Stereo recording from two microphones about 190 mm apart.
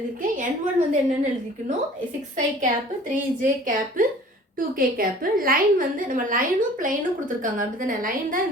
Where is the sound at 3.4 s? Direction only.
45° right (ahead or behind).